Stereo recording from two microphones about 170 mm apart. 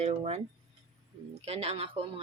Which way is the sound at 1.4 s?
35° right (ahead or behind).